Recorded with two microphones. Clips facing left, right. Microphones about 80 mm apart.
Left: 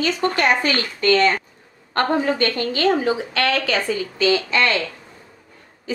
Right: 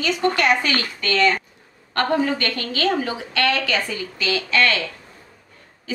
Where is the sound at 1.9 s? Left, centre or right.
Left.